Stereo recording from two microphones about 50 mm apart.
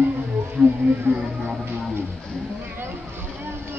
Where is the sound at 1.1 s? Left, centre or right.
Right.